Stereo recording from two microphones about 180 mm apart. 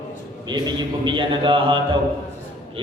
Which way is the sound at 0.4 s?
25° right (ahead or behind).